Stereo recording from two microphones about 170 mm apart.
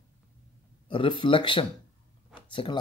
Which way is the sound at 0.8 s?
30° left (ahead or behind).